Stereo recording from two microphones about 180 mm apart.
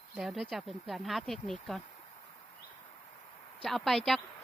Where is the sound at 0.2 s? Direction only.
Centre (ahead or behind).